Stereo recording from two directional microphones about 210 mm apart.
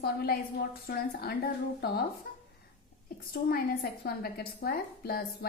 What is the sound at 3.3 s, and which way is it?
A woman's voice, 45° left (ahead or behind).